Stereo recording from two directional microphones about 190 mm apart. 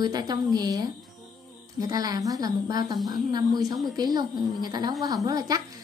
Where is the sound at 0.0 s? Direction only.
20° right (ahead or behind).